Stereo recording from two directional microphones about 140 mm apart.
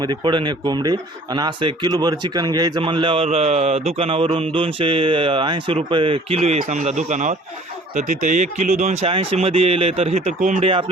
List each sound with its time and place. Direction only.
0.0 s speech: 35° right (ahead or behind)
3.2 s speech: 50° right (ahead or behind)